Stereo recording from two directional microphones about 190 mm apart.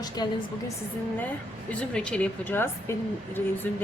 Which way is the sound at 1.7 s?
5° left (ahead or behind).